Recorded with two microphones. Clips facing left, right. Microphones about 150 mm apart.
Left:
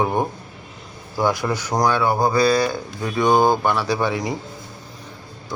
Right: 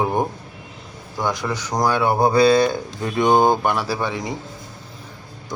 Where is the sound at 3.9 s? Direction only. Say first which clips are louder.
Left 3 dB; centre (ahead or behind).